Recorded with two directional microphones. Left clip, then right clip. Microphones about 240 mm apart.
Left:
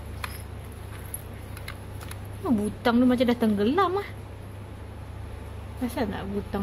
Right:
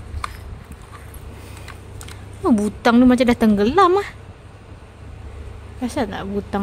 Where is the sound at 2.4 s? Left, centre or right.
Right.